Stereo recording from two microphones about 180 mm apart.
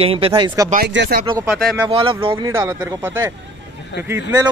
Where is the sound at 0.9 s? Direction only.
70° right (ahead or behind).